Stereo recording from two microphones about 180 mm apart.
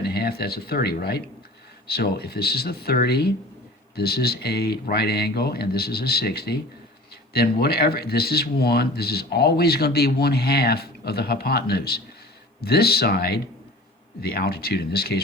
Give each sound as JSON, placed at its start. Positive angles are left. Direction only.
{"t": 0.0, "sound": "speech", "side_deg": 60}